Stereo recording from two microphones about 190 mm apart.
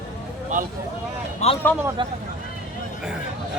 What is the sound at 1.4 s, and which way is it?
Speech, 35° left (ahead or behind).